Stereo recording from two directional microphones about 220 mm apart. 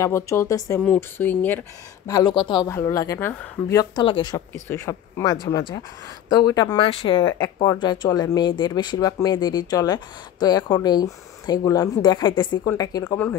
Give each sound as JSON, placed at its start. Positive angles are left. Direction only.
{"t": 0.0, "sound": "a woman's voice", "side_deg": 10}